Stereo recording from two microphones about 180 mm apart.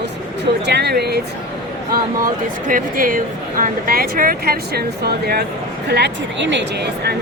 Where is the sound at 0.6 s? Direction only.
70° right (ahead or behind).